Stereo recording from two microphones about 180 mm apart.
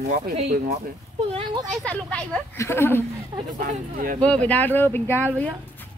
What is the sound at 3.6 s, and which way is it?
Speech, 50° right (ahead or behind).